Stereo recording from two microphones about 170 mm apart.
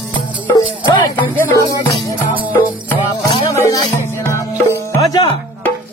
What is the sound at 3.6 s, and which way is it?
Music, 20° left (ahead or behind).